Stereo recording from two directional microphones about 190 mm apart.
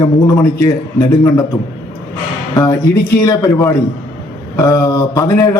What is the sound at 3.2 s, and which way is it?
Speech, 15° left (ahead or behind).